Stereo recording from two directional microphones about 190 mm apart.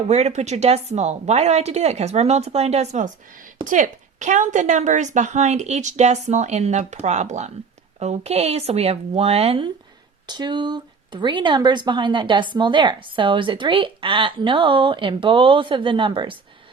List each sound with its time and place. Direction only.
0.1 s a woman's voice: 35° right (ahead or behind)